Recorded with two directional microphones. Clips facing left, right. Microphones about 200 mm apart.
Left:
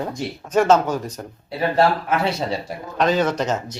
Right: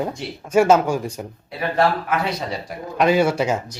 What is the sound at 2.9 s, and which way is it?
Speech, 10° right (ahead or behind).